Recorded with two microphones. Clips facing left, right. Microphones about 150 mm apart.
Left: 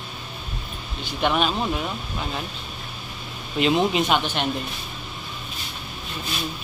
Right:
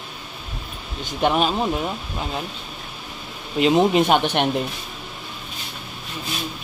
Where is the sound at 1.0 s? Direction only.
40° right (ahead or behind).